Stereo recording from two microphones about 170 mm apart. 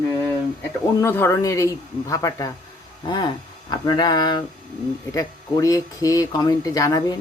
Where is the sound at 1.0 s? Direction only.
15° left (ahead or behind).